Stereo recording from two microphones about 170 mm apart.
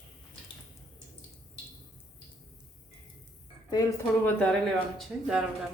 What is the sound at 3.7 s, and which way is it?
Speech, 20° left (ahead or behind).